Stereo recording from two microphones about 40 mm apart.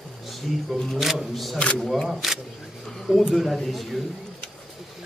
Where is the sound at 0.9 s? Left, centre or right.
Centre.